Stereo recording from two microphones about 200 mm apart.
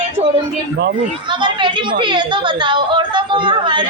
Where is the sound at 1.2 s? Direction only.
25° right (ahead or behind).